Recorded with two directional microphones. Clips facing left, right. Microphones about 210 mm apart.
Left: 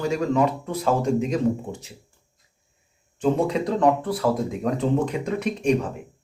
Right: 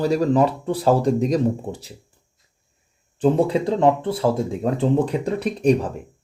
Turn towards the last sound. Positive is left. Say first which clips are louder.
# right 3 dB
turn(degrees=-35)  # may be behind; listen again after turning